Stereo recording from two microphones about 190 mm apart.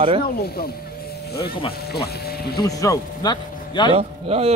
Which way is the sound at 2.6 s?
20° left (ahead or behind).